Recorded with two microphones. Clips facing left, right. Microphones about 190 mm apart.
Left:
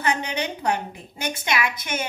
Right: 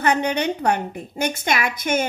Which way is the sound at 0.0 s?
50° right (ahead or behind).